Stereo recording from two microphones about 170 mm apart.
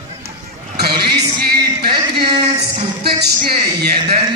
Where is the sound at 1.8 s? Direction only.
25° right (ahead or behind).